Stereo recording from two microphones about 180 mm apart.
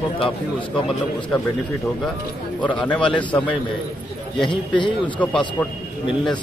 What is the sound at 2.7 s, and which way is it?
Speech, 5° left (ahead or behind).